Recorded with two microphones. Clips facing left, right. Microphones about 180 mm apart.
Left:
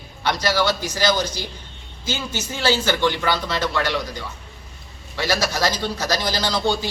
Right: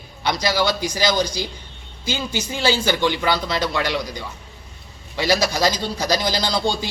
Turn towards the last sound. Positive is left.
turn(degrees=-15)  # may be behind; listen again after turning